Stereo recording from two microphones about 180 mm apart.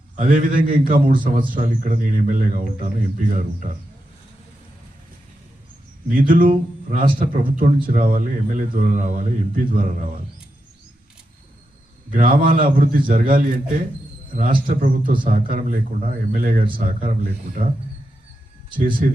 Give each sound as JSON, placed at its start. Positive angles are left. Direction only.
{"t": 0.2, "sound": "a man's voice", "side_deg": -50}
{"t": 6.1, "sound": "a man's voice", "side_deg": -50}
{"t": 12.1, "sound": "a man's voice", "side_deg": -50}
{"t": 18.8, "sound": "a man's voice", "side_deg": -50}